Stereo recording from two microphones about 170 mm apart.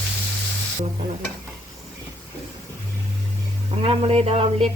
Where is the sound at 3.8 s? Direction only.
35° right (ahead or behind).